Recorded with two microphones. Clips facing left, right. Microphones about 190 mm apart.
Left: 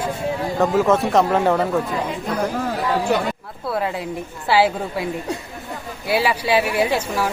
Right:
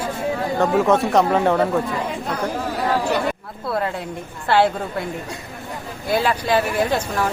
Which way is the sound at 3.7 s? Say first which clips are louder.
Left 1 dB; centre (ahead or behind).